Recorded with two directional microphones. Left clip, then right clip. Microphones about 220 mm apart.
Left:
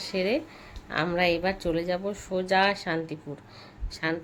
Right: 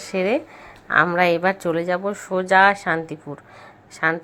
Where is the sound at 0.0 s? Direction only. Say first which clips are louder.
Right 6 dB; centre (ahead or behind).